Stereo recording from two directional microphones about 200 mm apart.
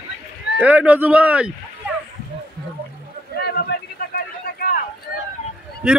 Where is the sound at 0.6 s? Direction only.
5° right (ahead or behind).